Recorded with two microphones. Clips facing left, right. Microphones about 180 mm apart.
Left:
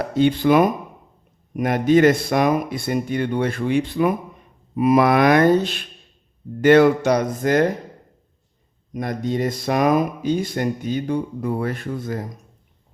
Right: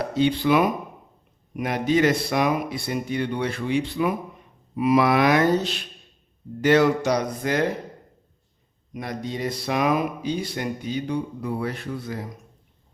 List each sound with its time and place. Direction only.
0.0 s speech: 50° left (ahead or behind)
8.9 s speech: 50° left (ahead or behind)